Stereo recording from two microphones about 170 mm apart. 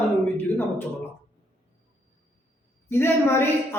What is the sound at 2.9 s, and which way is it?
Speech, 15° left (ahead or behind).